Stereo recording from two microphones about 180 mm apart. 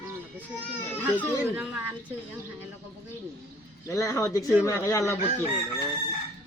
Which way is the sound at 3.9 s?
15° left (ahead or behind).